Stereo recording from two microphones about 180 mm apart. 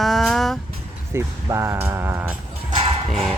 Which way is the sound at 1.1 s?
15° right (ahead or behind).